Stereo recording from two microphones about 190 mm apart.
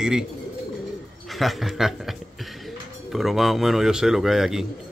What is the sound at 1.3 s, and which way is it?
A man's voice, centre (ahead or behind).